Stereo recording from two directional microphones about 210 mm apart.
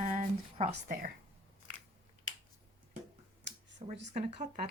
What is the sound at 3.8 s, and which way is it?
Speech, 35° right (ahead or behind).